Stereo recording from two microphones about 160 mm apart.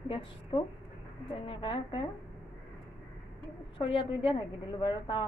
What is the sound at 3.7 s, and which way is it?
A woman's voice, 35° left (ahead or behind).